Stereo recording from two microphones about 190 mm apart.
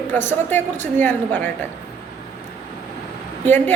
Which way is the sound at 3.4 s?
10° left (ahead or behind).